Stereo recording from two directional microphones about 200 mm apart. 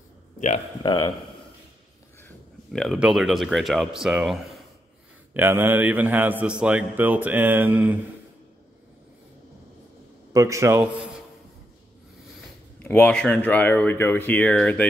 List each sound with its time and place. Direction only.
0.8 s speech: 20° left (ahead or behind)
2.2 s speech: 5° left (ahead or behind)
10.3 s speech: 15° right (ahead or behind)
12.7 s speech: 10° left (ahead or behind)